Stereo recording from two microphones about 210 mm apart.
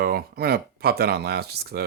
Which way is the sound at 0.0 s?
45° right (ahead or behind).